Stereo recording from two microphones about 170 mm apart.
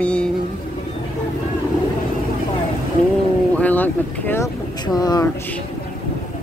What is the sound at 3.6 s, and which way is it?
Speech, 10° left (ahead or behind).